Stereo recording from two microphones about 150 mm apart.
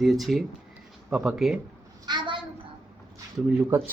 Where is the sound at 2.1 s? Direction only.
30° right (ahead or behind).